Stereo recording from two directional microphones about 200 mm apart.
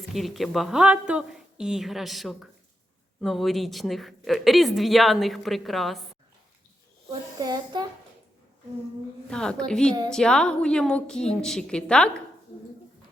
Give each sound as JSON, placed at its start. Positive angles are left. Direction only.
{"t": 0.1, "sound": "a woman's voice", "side_deg": 0}
{"t": 7.3, "sound": "speech", "side_deg": -20}
{"t": 9.3, "sound": "a woman's voice", "side_deg": 5}